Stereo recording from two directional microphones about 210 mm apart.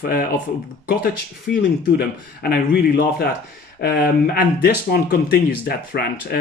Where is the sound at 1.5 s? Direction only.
45° left (ahead or behind).